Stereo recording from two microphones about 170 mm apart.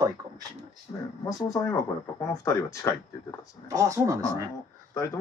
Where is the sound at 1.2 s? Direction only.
20° left (ahead or behind).